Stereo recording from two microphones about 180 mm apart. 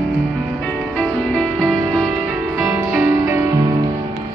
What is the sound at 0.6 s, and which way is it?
Music, 5° left (ahead or behind).